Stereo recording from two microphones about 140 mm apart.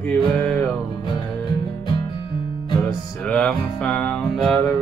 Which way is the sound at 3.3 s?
5° left (ahead or behind).